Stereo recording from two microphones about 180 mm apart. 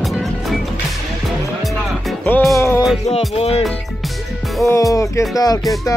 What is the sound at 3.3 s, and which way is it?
Music, 35° left (ahead or behind).